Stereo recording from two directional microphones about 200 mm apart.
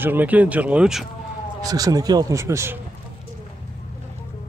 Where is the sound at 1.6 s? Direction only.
20° right (ahead or behind).